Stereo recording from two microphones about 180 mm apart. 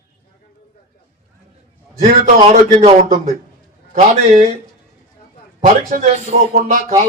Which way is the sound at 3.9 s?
40° right (ahead or behind).